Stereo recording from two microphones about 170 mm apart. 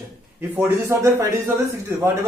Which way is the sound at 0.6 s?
15° right (ahead or behind).